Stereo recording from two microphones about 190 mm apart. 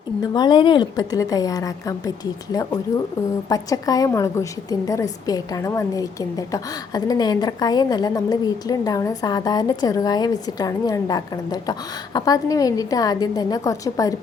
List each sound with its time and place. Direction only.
0.2 s a woman's voice: 20° left (ahead or behind)